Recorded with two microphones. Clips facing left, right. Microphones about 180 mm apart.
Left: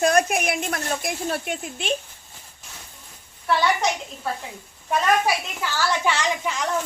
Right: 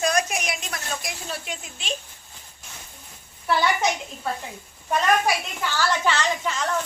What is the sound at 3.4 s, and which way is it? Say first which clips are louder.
A woman's voice: left 1 dB; centre (ahead or behind).